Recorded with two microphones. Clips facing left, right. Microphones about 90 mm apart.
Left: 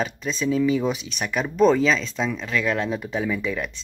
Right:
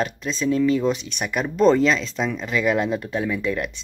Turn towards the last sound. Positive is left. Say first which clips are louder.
# right 2 dB
turn(degrees=0)  # may be behind; listen again after turning